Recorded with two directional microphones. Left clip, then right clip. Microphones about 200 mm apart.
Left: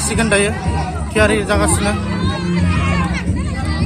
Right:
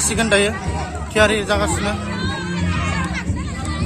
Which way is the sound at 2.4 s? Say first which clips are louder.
Left 3 dB; 60° right (ahead or behind).